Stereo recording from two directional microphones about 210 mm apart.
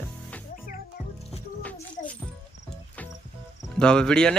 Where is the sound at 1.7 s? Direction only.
35° left (ahead or behind).